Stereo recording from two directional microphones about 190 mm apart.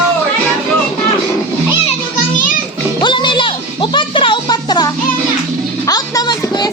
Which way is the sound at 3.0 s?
25° left (ahead or behind).